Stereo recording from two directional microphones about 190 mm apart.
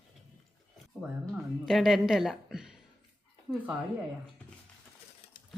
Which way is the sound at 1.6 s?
Centre (ahead or behind).